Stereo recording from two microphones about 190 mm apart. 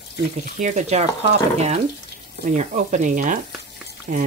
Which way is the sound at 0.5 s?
40° right (ahead or behind).